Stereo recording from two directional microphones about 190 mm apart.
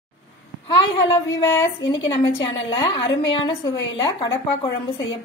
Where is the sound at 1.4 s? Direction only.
15° left (ahead or behind).